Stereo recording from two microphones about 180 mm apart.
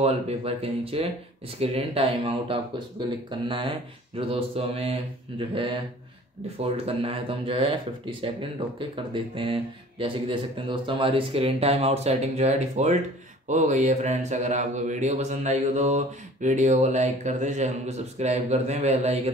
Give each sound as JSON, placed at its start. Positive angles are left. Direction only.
{"t": 0.0, "sound": "speech", "side_deg": -35}